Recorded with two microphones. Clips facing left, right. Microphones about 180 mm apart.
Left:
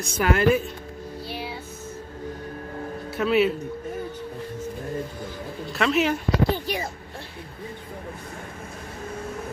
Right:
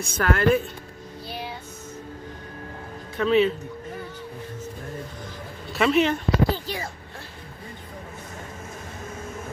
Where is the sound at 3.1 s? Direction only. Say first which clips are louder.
Right 1 dB; 5° left (ahead or behind).